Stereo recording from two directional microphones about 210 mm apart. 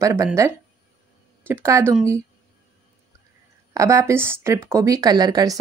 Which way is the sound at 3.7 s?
15° right (ahead or behind).